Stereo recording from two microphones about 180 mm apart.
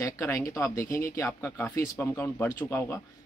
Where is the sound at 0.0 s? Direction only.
15° left (ahead or behind).